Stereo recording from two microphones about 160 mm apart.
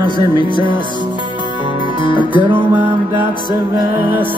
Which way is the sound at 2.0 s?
30° left (ahead or behind).